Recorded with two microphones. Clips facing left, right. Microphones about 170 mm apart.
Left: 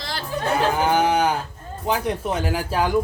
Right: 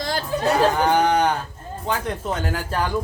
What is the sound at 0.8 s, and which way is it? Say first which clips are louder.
Speech: right 1 dB; 5° left (ahead or behind).